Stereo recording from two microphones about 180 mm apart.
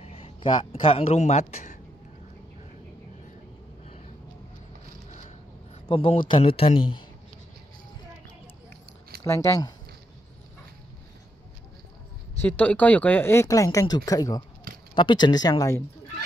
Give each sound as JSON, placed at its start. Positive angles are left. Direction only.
{"t": 0.0, "sound": "a man's voice", "side_deg": 30}
{"t": 3.8, "sound": "vehicle", "side_deg": 40}
{"t": 5.9, "sound": "a man's voice", "side_deg": 30}
{"t": 9.2, "sound": "speech", "side_deg": 15}
{"t": 12.4, "sound": "a man's voice", "side_deg": 10}